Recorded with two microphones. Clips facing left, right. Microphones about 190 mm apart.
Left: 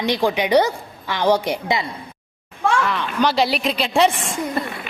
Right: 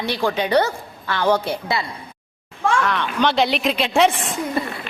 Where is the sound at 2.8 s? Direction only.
Centre (ahead or behind).